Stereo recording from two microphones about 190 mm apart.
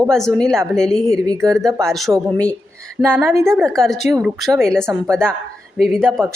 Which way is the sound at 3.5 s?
Centre (ahead or behind).